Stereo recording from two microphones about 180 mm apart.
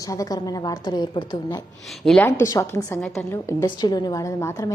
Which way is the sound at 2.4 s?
15° left (ahead or behind).